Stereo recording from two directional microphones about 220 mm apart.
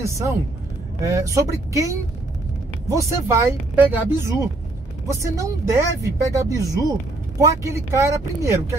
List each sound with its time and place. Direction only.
0.0 s speech: 15° right (ahead or behind)